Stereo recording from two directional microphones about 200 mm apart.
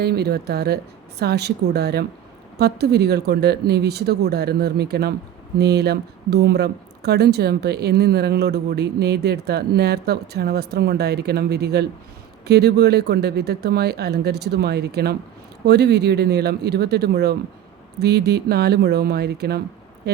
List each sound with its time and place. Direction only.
0.0 s speech: 55° right (ahead or behind)